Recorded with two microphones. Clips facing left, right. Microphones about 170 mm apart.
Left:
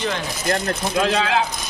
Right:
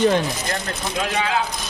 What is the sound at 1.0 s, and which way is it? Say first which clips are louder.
Speech: left 2 dB; 80° left.